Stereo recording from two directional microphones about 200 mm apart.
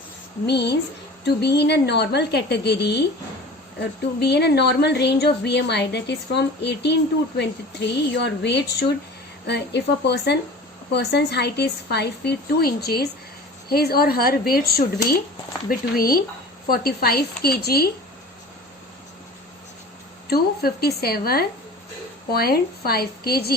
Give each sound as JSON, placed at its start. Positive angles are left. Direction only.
{"t": 0.4, "sound": "speech", "side_deg": 55}
{"t": 20.3, "sound": "speech", "side_deg": 50}